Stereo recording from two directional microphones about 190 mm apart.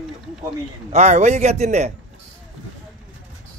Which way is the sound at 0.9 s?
40° right (ahead or behind).